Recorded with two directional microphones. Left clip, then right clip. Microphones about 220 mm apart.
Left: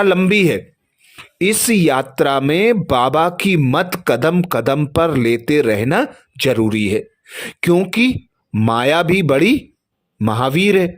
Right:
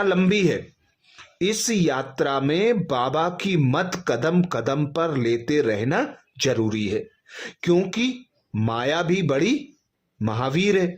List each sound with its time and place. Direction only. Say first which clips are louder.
0.0 s speech: left 7 dB; 25° left (ahead or behind)